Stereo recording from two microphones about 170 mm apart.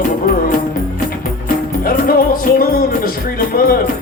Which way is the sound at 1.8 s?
60° left (ahead or behind).